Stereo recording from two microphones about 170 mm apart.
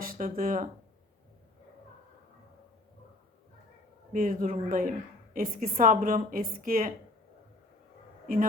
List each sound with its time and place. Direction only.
0.0 s speech: 55° right (ahead or behind)
4.1 s a woman's voice: 55° right (ahead or behind)